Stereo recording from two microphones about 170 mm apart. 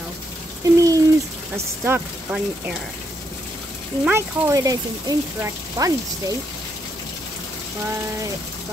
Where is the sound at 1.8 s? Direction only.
10° right (ahead or behind).